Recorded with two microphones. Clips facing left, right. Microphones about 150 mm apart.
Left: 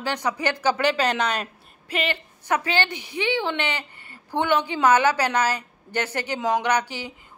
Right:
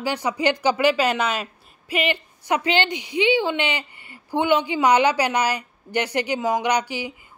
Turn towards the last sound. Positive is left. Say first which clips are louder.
# right 1 dB
turn(degrees=-10)  # may be behind; listen again after turning